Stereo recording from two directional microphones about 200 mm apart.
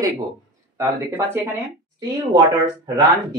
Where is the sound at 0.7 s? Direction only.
10° right (ahead or behind).